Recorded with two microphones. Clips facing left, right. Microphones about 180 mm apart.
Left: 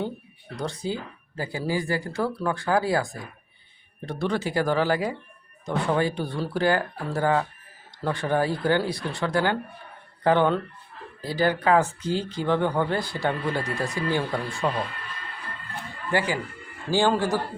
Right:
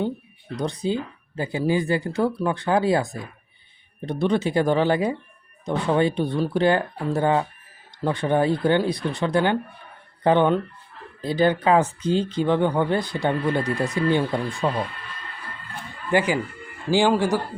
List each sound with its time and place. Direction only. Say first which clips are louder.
0.5 s speech: right 5 dB; 20° right (ahead or behind)
14.6 s speech: right 1 dB; centre (ahead or behind)
16.1 s a man's voice: right 5 dB; 15° right (ahead or behind)